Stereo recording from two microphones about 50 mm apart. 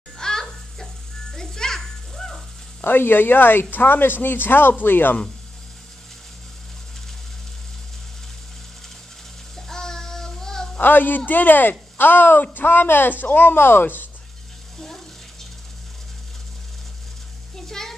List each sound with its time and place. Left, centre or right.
0.2 s a sound: centre
1.3 s music: centre
2.8 s speech: left
9.6 s child singing: centre
10.8 s speech: left
17.6 s a sound: centre